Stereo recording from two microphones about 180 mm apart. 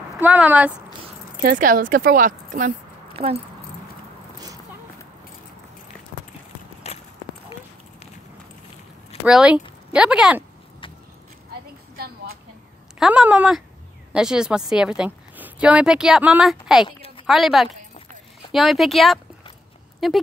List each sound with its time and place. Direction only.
0.2 s speech: 10° right (ahead or behind)
1.4 s speech: 50° right (ahead or behind)
3.1 s keys jangling: 30° right (ahead or behind)
6.8 s clip-clop: 35° left (ahead or behind)
9.2 s speech: 5° right (ahead or behind)
13.0 s a woman's voice: 5° right (ahead or behind)
16.8 s a sound: 30° left (ahead or behind)
17.3 s speech: centre (ahead or behind)